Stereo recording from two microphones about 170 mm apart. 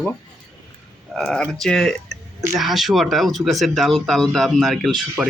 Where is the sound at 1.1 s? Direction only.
5° left (ahead or behind).